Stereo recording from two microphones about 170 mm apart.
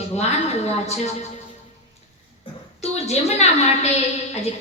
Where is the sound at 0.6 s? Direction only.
40° left (ahead or behind).